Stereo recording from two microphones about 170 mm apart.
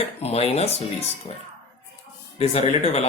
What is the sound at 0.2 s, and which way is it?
Speech, 35° left (ahead or behind).